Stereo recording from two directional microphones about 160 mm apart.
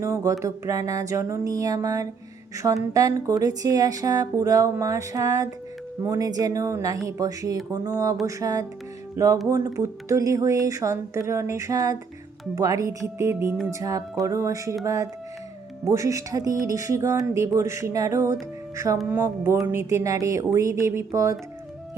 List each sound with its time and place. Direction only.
0.0 s speech: 20° right (ahead or behind)
15.8 s speech: 20° right (ahead or behind)